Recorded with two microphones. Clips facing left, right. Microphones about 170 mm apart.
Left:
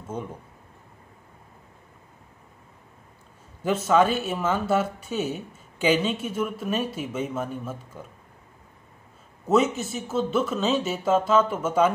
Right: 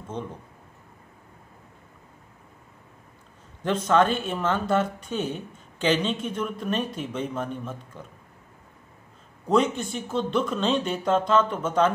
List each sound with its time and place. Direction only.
0.1 s speech: 10° left (ahead or behind)
3.6 s speech: 5° left (ahead or behind)
9.5 s speech: 5° left (ahead or behind)